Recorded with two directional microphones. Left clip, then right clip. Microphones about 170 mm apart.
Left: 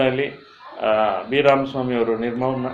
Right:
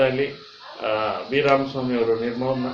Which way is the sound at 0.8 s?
40° left (ahead or behind).